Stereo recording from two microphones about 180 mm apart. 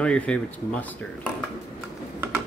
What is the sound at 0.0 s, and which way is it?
Speech, 5° left (ahead or behind).